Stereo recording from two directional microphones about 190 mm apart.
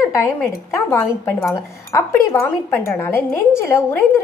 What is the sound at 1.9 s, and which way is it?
A woman's voice, 15° left (ahead or behind).